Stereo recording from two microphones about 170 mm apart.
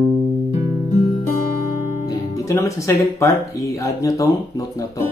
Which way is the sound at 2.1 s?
20° left (ahead or behind).